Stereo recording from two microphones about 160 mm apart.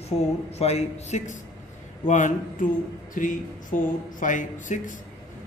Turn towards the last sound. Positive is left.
turn(degrees=55)  # may be behind; listen again after turning